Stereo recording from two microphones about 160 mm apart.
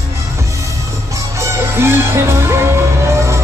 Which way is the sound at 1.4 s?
15° right (ahead or behind).